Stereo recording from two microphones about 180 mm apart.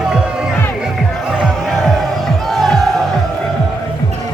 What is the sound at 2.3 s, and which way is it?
Music, centre (ahead or behind).